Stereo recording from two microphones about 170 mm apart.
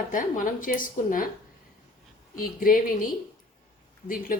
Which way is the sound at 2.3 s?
55° left (ahead or behind).